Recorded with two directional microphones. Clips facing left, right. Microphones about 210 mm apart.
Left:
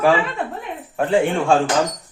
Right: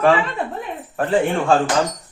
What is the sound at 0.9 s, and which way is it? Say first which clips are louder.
Speech: left 1 dB; 5° left (ahead or behind).